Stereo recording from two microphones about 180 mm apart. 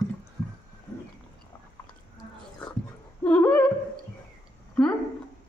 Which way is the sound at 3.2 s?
10° left (ahead or behind).